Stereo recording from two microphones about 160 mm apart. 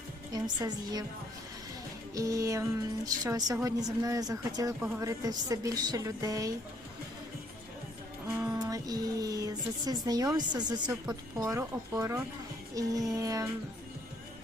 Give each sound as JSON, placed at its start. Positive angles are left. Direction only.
{"t": 0.3, "sound": "music", "side_deg": -25}
{"t": 2.1, "sound": "music", "side_deg": -20}
{"t": 8.3, "sound": "music", "side_deg": -10}
{"t": 8.5, "sound": "a woman's voice", "side_deg": -20}
{"t": 11.1, "sound": "music", "side_deg": -20}